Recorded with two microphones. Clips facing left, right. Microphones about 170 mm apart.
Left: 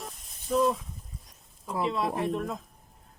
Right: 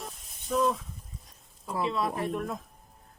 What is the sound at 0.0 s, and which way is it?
Snake, centre (ahead or behind).